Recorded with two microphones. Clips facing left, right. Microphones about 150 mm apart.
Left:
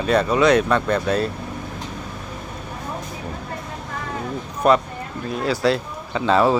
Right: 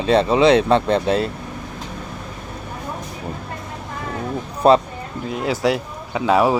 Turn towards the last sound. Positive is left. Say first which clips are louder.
# right 1 dB
turn(degrees=-10)  # may be behind; listen again after turning